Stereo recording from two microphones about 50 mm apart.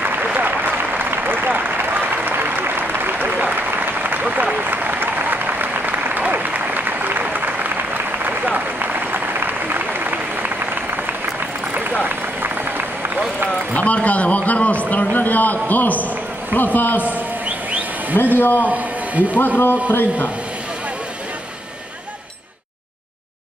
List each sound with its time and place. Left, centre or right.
0.0 s applause: right
11.7 s run: right
13.7 s a sound: left
16.5 s speech: left
18.1 s speech: left
19.6 s speech: left